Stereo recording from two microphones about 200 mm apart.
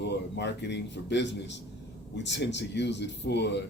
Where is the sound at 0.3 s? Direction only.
60° left (ahead or behind).